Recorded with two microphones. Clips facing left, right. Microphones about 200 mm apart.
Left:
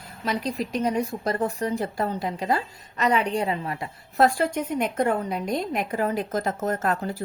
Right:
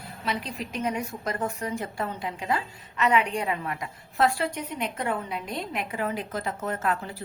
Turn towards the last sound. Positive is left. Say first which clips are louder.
# left 4 dB
turn(degrees=40)  # may be behind; listen again after turning